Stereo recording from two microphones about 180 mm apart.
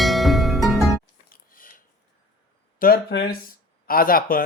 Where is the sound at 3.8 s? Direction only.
55° left (ahead or behind).